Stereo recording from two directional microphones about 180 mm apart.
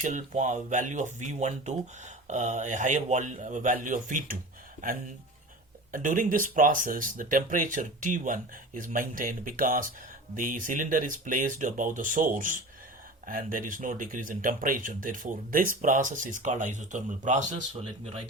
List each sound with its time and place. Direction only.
0.0 s speech: 45° right (ahead or behind)
5.9 s speech: 50° right (ahead or behind)